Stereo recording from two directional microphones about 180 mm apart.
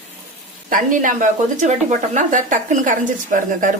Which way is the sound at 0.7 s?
45° right (ahead or behind).